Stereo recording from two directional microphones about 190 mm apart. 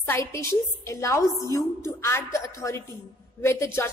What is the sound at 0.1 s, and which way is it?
A woman's voice, 15° left (ahead or behind).